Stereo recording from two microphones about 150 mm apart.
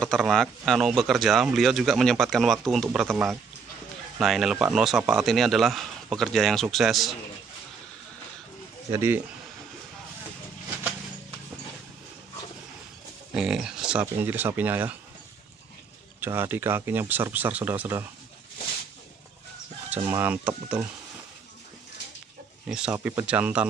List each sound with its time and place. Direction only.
0.0 s speech: centre (ahead or behind)
8.9 s speech: 15° right (ahead or behind)
13.3 s speech: 5° right (ahead or behind)
16.2 s speech: 15° right (ahead or behind)
20.1 s speech: 15° right (ahead or behind)
22.7 s speech: 5° right (ahead or behind)